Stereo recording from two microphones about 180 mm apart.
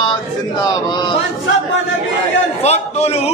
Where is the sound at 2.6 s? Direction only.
40° left (ahead or behind).